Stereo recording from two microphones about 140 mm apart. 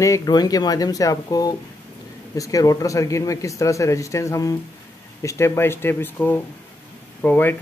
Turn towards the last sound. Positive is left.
turn(degrees=15)  # may be behind; listen again after turning